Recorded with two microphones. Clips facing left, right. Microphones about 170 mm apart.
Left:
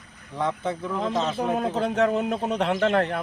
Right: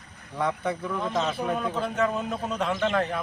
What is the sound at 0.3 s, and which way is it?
Speech, 25° left (ahead or behind).